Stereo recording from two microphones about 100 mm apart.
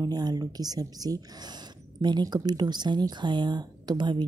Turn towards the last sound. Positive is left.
turn(degrees=-50)  # may be behind; listen again after turning